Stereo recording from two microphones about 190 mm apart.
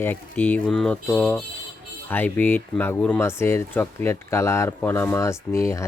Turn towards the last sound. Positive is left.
turn(degrees=15)  # may be behind; listen again after turning